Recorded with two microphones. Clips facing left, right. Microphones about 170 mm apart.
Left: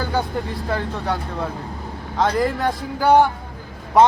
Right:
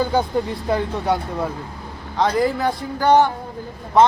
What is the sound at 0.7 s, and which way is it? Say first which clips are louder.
Speech: right 4 dB; 15° right (ahead or behind).